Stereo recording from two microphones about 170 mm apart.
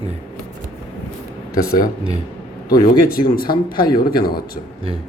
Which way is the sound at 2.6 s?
60° left (ahead or behind).